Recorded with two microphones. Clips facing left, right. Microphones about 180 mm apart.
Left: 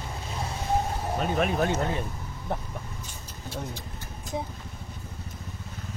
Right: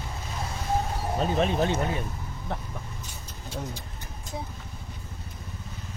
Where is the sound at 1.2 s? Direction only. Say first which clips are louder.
Right 1 dB; 30° right (ahead or behind).